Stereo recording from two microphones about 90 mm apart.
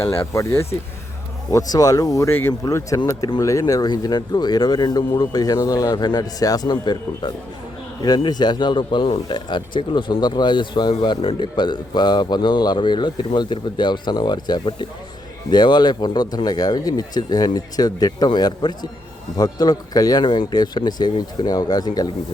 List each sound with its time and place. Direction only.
0.0 s speech: 30° left (ahead or behind)
1.5 s speech: 45° left (ahead or behind)
6.7 s a man's voice: 55° left (ahead or behind); by 9.2 s 75° left (ahead or behind)
9.3 s a man's voice: 60° left (ahead or behind)
11.2 s a man's voice: 75° left (ahead or behind); by 20.2 s 45° left (ahead or behind)
20.2 s speech: 60° left (ahead or behind)